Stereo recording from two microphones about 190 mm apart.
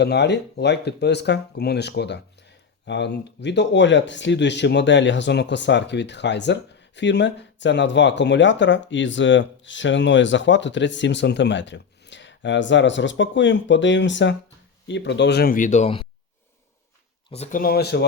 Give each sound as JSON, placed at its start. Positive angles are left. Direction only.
{"t": 0.0, "sound": "speech", "side_deg": 65}
{"t": 17.3, "sound": "speech", "side_deg": 35}
{"t": 17.6, "sound": "speech", "side_deg": 55}